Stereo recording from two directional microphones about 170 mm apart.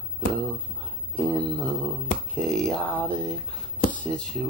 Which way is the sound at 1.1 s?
10° left (ahead or behind).